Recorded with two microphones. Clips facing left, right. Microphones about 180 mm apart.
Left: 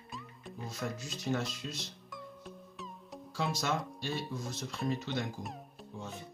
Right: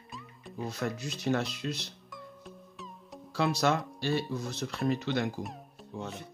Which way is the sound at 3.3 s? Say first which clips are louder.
Right 6 dB; 70° right (ahead or behind).